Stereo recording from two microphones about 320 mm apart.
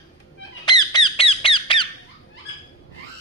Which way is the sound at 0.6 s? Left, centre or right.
Centre.